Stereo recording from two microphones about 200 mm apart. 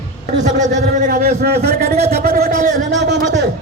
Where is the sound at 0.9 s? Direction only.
45° right (ahead or behind).